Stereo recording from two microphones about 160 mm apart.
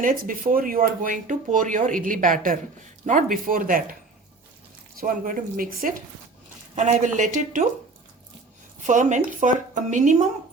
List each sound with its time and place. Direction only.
0.0 s speech: 60° right (ahead or behind)
4.9 s speech: 60° right (ahead or behind)
6.7 s a woman's voice: 50° right (ahead or behind)
8.9 s a woman's voice: 50° right (ahead or behind)